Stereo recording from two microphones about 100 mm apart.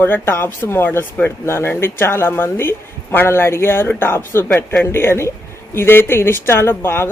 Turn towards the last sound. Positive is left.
turn(degrees=25)  # may be behind; listen again after turning